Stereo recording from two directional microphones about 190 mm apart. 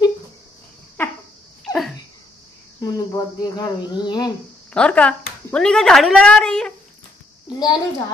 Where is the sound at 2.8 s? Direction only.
20° left (ahead or behind).